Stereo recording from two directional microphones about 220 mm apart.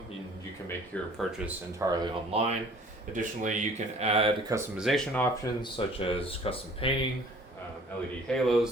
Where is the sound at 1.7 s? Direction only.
15° right (ahead or behind).